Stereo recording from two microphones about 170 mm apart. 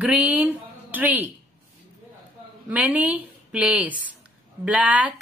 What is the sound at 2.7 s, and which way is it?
A woman's voice, 10° right (ahead or behind).